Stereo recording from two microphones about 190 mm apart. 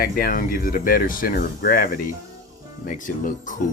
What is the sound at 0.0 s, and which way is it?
Speech, 50° left (ahead or behind).